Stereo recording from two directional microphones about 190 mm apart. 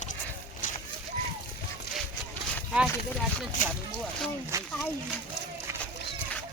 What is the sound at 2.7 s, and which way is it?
Speech, 5° right (ahead or behind).